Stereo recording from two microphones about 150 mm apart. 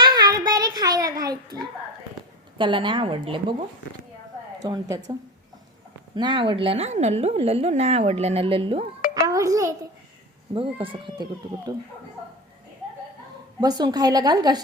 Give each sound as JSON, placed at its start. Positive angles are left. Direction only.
{"t": 0.0, "sound": "child singing", "side_deg": -25}
{"t": 2.6, "sound": "a woman's voice", "side_deg": -35}
{"t": 4.6, "sound": "a woman's voice", "side_deg": -25}
{"t": 6.1, "sound": "a woman's voice", "side_deg": -30}
{"t": 9.0, "sound": "chink", "side_deg": 85}
{"t": 9.2, "sound": "a child's voice", "side_deg": -20}
{"t": 10.5, "sound": "a woman's voice", "side_deg": -35}
{"t": 13.6, "sound": "a woman's voice", "side_deg": -25}